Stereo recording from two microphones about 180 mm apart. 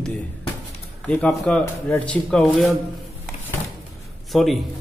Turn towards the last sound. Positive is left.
turn(degrees=0)  # may be behind; listen again after turning